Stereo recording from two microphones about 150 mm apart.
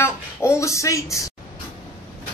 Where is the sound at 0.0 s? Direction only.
15° left (ahead or behind).